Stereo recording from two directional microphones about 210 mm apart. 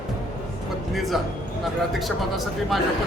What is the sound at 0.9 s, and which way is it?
A man's voice, centre (ahead or behind).